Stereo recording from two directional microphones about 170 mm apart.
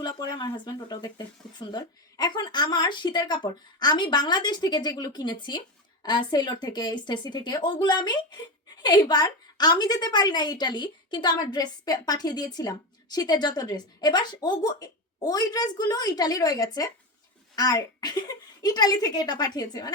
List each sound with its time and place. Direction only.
0.0 s a woman's voice: 25° left (ahead or behind)